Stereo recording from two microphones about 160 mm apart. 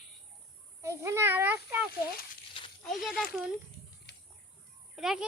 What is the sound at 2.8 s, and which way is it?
Speech, centre (ahead or behind).